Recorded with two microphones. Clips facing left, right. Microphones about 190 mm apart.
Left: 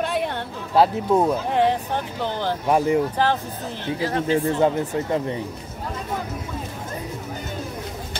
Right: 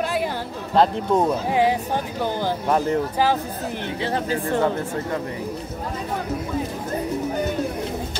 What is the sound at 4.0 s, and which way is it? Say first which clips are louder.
Speech: left 2 dB; 30° right (ahead or behind).